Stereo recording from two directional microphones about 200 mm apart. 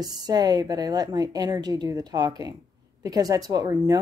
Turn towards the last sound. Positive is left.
turn(degrees=-20)  # may be behind; listen again after turning